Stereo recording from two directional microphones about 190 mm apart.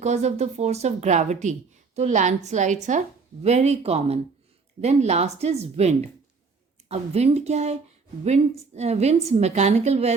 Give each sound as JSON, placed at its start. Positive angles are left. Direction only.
{"t": 0.0, "sound": "a woman's voice", "side_deg": -35}